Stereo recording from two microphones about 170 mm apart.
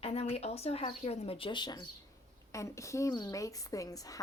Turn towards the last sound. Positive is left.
turn(degrees=20)  # may be behind; listen again after turning